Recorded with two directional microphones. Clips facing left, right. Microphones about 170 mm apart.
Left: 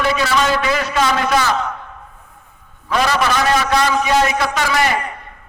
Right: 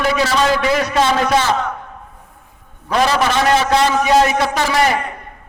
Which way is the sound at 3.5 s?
25° right (ahead or behind).